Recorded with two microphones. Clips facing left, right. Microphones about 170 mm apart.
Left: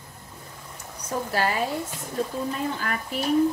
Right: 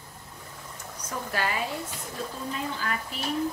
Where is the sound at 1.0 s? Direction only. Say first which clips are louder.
Left 5 dB; 35° left (ahead or behind).